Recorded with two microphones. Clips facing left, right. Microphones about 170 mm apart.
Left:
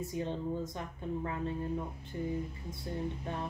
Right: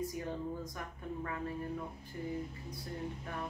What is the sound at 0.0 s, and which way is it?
A woman's voice, 25° left (ahead or behind).